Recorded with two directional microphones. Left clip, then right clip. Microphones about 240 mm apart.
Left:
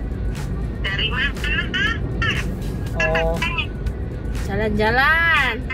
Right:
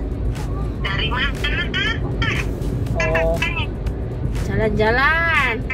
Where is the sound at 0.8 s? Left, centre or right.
Centre.